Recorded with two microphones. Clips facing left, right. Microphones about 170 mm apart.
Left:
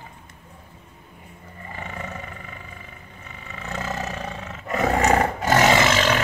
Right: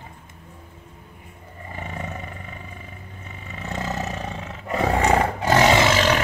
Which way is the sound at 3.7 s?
20° right (ahead or behind).